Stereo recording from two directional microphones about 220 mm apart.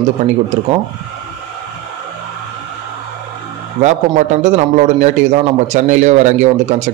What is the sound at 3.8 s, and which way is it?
A man's voice, 35° right (ahead or behind).